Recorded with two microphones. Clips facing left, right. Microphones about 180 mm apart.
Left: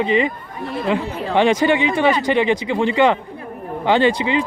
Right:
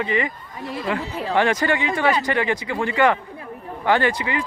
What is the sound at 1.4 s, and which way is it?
Speech, 20° left (ahead or behind).